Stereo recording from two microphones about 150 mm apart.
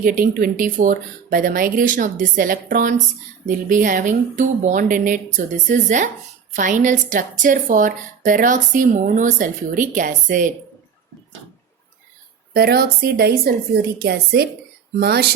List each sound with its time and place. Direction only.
0.0 s a woman's voice: 70° right (ahead or behind)
12.5 s speech: 90° right